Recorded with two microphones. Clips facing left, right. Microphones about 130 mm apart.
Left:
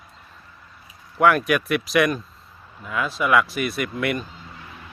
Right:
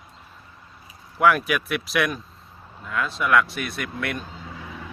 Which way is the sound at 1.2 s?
Centre (ahead or behind).